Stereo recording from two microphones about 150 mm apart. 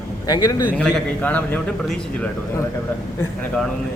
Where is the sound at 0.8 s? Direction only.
5° left (ahead or behind).